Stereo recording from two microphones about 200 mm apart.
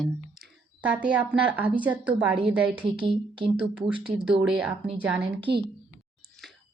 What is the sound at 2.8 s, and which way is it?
Speech, 25° right (ahead or behind).